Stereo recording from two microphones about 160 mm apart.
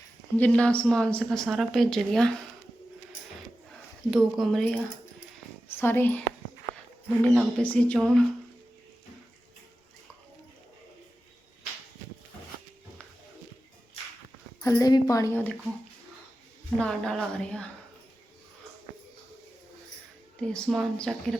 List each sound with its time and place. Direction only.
0.3 s a woman's voice: 10° left (ahead or behind)
4.1 s a woman's voice: centre (ahead or behind)
5.7 s a woman's voice: 15° left (ahead or behind)
14.6 s a woman's voice: 20° left (ahead or behind)
16.7 s a woman's voice: 5° left (ahead or behind)
20.4 s a woman's voice: 5° left (ahead or behind)